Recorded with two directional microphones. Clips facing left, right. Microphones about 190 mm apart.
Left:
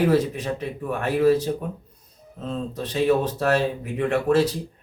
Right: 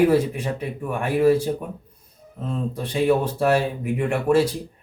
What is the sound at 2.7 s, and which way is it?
Speech, 10° right (ahead or behind).